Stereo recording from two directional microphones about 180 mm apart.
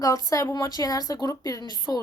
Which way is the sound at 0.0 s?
20° left (ahead or behind).